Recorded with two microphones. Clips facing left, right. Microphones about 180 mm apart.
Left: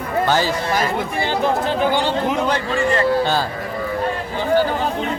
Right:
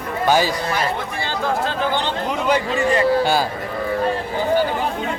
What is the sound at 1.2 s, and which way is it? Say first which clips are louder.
Speech: left 2 dB; 20° left (ahead or behind).